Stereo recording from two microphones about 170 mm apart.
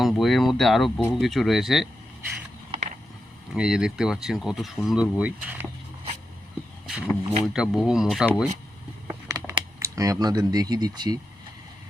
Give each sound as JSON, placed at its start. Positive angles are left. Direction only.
{"t": 0.0, "sound": "speech", "side_deg": 0}
{"t": 3.5, "sound": "speech", "side_deg": -5}
{"t": 7.1, "sound": "speech", "side_deg": 0}
{"t": 9.0, "sound": "a sound", "side_deg": -20}